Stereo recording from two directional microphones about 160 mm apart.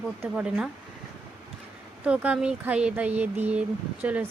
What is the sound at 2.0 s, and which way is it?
Speech, 10° right (ahead or behind).